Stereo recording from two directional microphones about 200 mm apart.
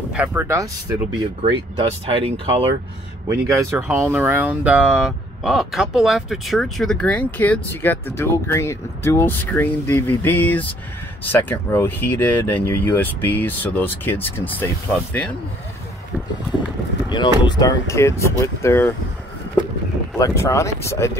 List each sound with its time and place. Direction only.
0.1 s speech: 5° right (ahead or behind)
1.8 s speech: 25° right (ahead or behind)
3.3 s speech: 15° right (ahead or behind); by 15.3 s 5° left (ahead or behind)
17.1 s speech: 20° left (ahead or behind)
20.2 s speech: 15° left (ahead or behind)